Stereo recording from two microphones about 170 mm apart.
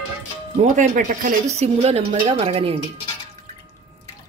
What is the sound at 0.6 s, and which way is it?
Speech, 45° right (ahead or behind).